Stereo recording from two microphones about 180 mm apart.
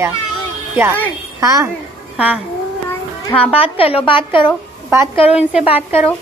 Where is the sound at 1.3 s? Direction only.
20° right (ahead or behind).